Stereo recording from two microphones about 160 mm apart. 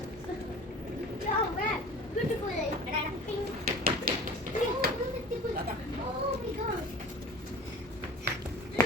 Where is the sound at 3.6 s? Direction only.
70° right (ahead or behind).